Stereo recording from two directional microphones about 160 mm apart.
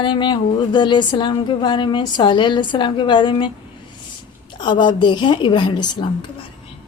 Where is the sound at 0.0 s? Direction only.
30° left (ahead or behind).